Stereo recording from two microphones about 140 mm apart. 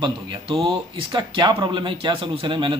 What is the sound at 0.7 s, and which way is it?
A man's voice, 35° right (ahead or behind).